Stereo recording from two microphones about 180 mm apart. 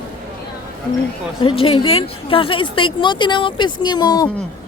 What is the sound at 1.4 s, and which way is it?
Speech, 30° left (ahead or behind).